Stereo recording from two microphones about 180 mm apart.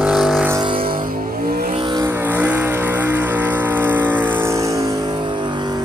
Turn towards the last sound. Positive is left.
turn(degrees=-10)  # may be behind; listen again after turning